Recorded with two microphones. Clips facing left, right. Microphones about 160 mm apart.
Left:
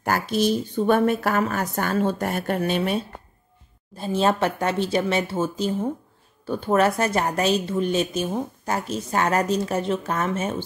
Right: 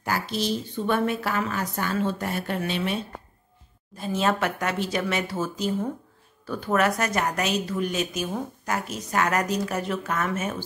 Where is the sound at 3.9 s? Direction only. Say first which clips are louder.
Left 3 dB; 30° left (ahead or behind).